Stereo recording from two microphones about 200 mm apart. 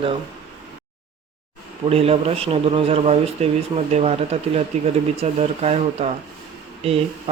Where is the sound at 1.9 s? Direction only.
30° right (ahead or behind).